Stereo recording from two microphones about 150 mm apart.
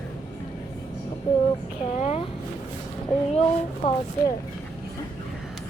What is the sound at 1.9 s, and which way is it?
Speech, 45° left (ahead or behind).